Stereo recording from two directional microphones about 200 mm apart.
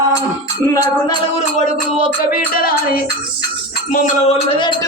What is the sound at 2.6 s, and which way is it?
Music, 45° left (ahead or behind).